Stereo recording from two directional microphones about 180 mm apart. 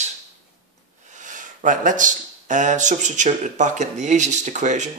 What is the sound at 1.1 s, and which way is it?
Speech, 45° right (ahead or behind).